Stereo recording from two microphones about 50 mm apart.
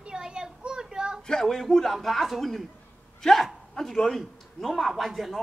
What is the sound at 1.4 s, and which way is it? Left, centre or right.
A man's voice, centre.